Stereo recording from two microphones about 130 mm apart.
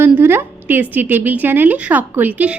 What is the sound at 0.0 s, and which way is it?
A woman's voice, 15° right (ahead or behind).